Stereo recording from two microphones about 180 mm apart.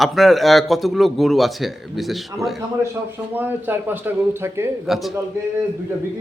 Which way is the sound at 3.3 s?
10° right (ahead or behind).